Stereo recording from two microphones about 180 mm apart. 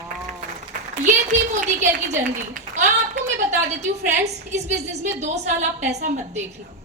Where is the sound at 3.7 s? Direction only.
40° right (ahead or behind).